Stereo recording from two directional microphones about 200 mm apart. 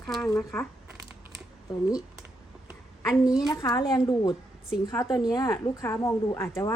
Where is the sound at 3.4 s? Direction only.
20° left (ahead or behind).